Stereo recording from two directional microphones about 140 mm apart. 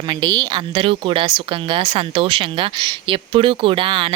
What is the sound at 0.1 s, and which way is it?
A woman's voice, 30° right (ahead or behind).